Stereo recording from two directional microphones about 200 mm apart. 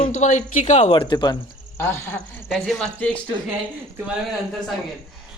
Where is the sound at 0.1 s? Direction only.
35° left (ahead or behind).